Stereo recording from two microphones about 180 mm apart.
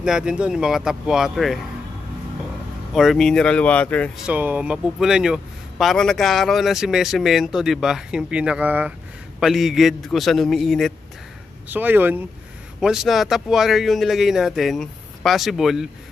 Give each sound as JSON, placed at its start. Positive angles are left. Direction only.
{"t": 0.0, "sound": "a man's voice", "side_deg": -5}
{"t": 2.9, "sound": "a man's voice", "side_deg": 0}
{"t": 4.3, "sound": "a man's voice", "side_deg": -10}
{"t": 11.7, "sound": "a man's voice", "side_deg": -10}